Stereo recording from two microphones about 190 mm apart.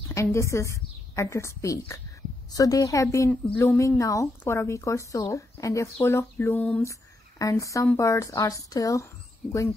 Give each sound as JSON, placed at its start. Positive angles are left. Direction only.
{"t": 0.1, "sound": "a woman's voice", "side_deg": 15}